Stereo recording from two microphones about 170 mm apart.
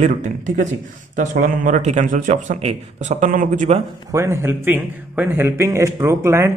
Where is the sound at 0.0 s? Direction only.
45° right (ahead or behind).